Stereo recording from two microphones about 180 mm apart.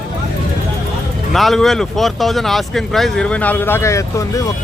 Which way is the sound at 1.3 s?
Centre (ahead or behind).